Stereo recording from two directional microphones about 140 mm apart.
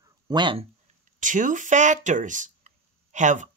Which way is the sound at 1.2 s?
65° right (ahead or behind).